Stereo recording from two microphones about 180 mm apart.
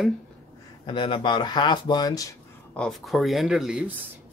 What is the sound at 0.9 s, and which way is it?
Speech, 25° left (ahead or behind).